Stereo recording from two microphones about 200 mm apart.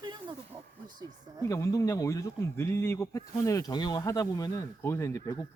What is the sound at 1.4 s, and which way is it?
Speech, 15° left (ahead or behind).